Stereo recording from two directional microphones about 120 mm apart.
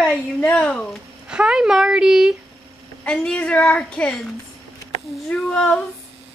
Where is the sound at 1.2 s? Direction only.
5° right (ahead or behind).